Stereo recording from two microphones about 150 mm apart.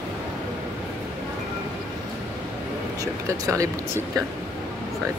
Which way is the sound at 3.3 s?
20° right (ahead or behind).